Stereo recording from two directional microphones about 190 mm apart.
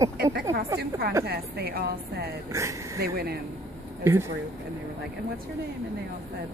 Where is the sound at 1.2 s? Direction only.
55° right (ahead or behind).